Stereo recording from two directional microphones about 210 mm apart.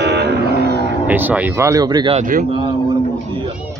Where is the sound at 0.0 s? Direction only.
50° right (ahead or behind).